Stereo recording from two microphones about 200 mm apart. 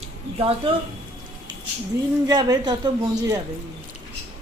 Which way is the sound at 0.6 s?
25° right (ahead or behind).